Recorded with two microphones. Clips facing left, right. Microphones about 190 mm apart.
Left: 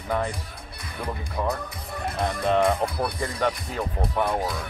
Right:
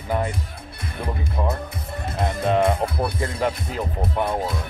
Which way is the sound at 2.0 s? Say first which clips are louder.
Right 2 dB; 25° right (ahead or behind).